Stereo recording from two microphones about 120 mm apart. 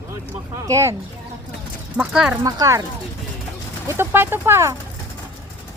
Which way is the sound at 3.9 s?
20° right (ahead or behind).